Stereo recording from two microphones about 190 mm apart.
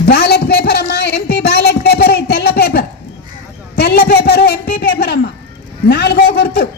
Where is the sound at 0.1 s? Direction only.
60° left (ahead or behind).